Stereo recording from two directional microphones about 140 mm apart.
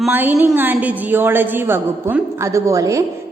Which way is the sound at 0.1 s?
15° right (ahead or behind).